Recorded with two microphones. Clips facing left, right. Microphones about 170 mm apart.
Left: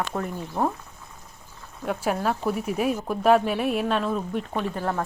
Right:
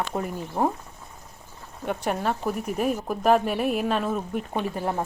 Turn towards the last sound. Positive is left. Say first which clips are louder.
# even
turn(degrees=-15)  # may be behind; listen again after turning